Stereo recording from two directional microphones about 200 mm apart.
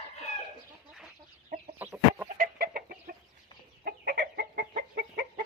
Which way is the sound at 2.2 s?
45° right (ahead or behind).